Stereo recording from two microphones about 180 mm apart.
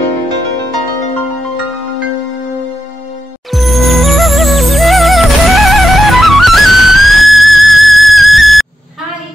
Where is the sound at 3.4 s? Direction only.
Centre (ahead or behind).